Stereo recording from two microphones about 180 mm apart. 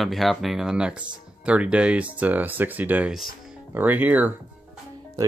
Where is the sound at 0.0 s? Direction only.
Centre (ahead or behind).